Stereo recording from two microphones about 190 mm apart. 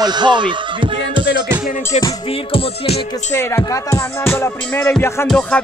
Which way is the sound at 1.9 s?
30° left (ahead or behind).